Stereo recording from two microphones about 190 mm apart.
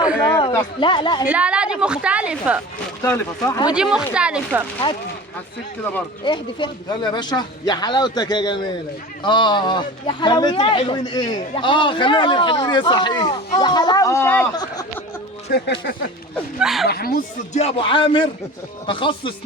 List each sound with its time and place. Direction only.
0.8 s a man's voice: 25° left (ahead or behind)
1.3 s a woman's voice: 5° right (ahead or behind)
3.0 s speech: 15° left (ahead or behind)
3.8 s a woman's voice: 5° right (ahead or behind)
6.2 s a man's voice: 25° left (ahead or behind)
15.5 s speech: 65° left (ahead or behind)
16.6 s a woman's voice: centre (ahead or behind)
16.8 s speech: 55° left (ahead or behind)
17.5 s a man's voice: 30° left (ahead or behind)